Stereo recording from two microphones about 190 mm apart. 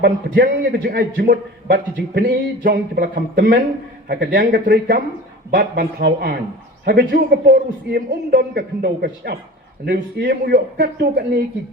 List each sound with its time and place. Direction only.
0.0 s a man's voice: 55° right (ahead or behind)